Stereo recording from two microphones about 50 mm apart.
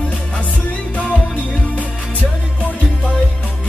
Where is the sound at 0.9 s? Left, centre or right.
Left.